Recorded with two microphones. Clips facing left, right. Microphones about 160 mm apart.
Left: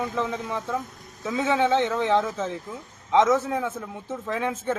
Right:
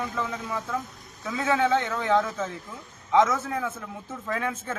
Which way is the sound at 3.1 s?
Centre (ahead or behind).